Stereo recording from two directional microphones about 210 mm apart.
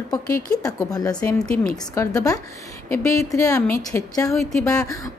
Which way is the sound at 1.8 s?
15° left (ahead or behind).